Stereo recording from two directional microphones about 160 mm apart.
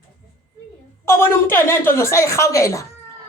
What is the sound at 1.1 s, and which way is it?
A woman's voice, 15° left (ahead or behind).